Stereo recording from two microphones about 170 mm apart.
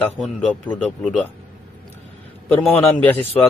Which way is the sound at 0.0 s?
5° left (ahead or behind).